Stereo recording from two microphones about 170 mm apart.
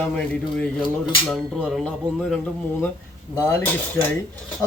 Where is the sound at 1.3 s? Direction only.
Centre (ahead or behind).